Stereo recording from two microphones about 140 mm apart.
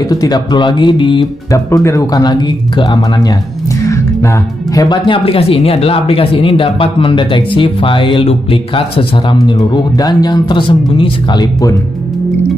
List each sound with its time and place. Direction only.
0.0 s speech: 25° left (ahead or behind)
1.5 s speech: 20° left (ahead or behind)
4.8 s speech: 35° left (ahead or behind)